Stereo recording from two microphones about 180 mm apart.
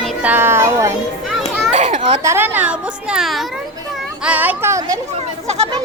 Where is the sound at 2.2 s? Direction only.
15° right (ahead or behind).